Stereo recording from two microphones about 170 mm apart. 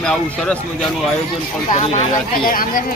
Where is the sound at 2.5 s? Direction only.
55° left (ahead or behind).